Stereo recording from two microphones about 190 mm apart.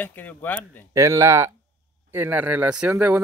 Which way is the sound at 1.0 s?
15° right (ahead or behind).